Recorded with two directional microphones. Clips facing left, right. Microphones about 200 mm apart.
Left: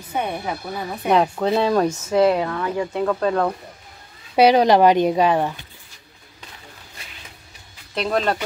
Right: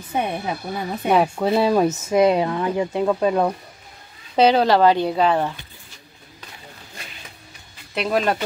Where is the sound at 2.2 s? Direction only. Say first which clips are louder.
Right 1 dB; 20° right (ahead or behind).